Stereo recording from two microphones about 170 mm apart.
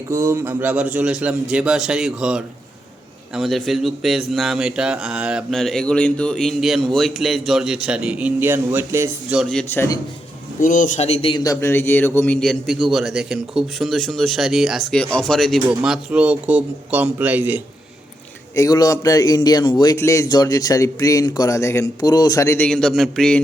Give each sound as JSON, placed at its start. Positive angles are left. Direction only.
{"t": 0.1, "sound": "a man's voice", "side_deg": -15}
{"t": 9.3, "sound": "a man's voice", "side_deg": 0}
{"t": 10.6, "sound": "a man's voice", "side_deg": 55}
{"t": 18.5, "sound": "speech", "side_deg": 20}